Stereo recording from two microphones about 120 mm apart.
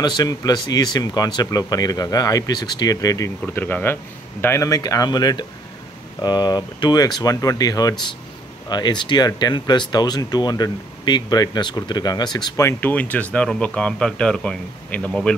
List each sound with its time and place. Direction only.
0.0 s speech: 35° left (ahead or behind)
3.4 s speech: 15° left (ahead or behind); by 12.6 s 35° left (ahead or behind)
12.6 s a man's voice: 15° left (ahead or behind)